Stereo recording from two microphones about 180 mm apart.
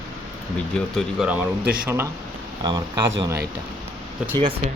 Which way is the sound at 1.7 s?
10° right (ahead or behind).